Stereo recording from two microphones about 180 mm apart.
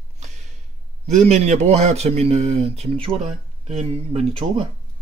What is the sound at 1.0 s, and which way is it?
Speech, 40° right (ahead or behind).